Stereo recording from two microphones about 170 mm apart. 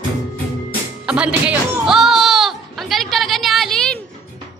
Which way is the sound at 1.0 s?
5° right (ahead or behind).